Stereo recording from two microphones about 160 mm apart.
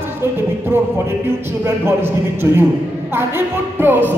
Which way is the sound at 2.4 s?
20° right (ahead or behind).